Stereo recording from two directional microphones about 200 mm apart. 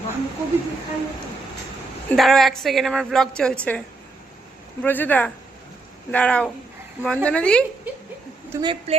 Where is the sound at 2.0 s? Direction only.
Centre (ahead or behind).